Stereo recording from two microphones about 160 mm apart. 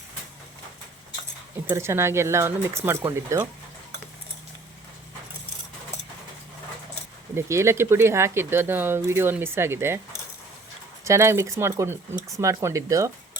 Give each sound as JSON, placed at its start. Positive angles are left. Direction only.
{"t": 1.6, "sound": "speech", "side_deg": -15}
{"t": 7.3, "sound": "speech", "side_deg": -15}
{"t": 11.0, "sound": "speech", "side_deg": -15}